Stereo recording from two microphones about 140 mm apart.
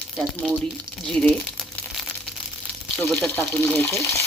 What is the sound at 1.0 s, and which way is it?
Speech, 5° left (ahead or behind).